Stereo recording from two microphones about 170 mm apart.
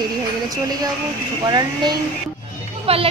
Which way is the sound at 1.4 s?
25° right (ahead or behind).